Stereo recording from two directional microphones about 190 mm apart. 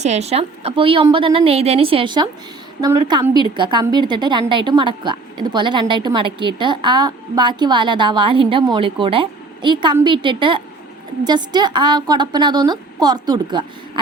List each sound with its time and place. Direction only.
0.0 s a woman's voice: 35° right (ahead or behind)